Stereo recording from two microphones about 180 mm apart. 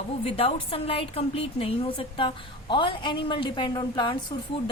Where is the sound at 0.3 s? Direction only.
30° left (ahead or behind).